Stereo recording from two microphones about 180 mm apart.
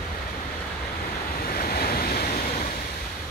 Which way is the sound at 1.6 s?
55° left (ahead or behind).